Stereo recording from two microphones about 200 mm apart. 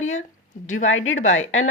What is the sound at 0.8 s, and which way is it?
Speech, 80° left.